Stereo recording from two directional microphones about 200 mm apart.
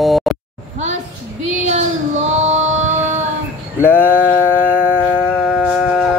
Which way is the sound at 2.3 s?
35° right (ahead or behind).